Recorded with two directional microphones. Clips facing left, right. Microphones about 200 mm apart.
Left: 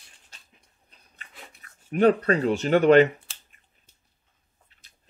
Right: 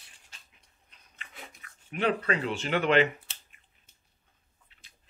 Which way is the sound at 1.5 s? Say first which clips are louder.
Left 11 dB; 40° left (ahead or behind).